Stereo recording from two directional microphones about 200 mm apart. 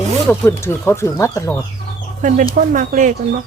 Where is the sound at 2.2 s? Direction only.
40° right (ahead or behind).